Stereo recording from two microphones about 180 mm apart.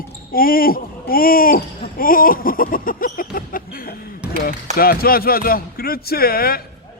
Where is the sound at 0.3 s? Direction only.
50° left (ahead or behind).